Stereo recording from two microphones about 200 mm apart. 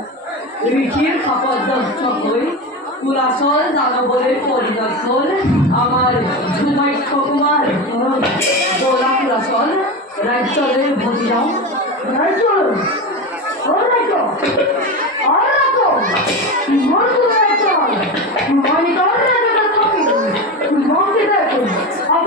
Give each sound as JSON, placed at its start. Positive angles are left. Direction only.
{"t": 17.4, "sound": "a child's voice", "side_deg": -45}